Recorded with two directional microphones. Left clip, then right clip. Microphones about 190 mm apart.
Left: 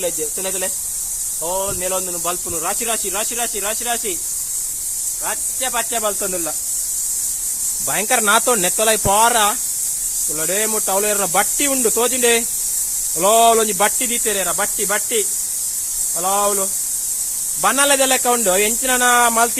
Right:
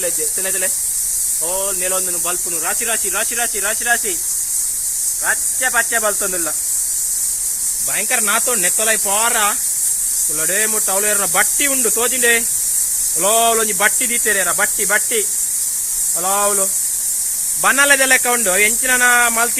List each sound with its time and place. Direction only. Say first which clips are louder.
0.0 s speech: right 1 dB; 30° left (ahead or behind)
2.6 s speech: right 1 dB; 35° left (ahead or behind)
5.2 s speech: right 6 dB; 20° left (ahead or behind)
7.9 s speech: left 3 dB; 35° left (ahead or behind)